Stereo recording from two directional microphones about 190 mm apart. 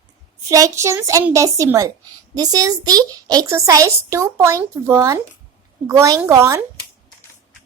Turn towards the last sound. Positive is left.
turn(degrees=-15)  # may be behind; listen again after turning